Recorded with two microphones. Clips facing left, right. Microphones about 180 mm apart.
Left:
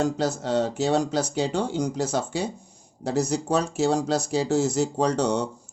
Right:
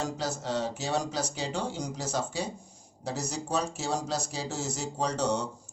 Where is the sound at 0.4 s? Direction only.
55° left (ahead or behind).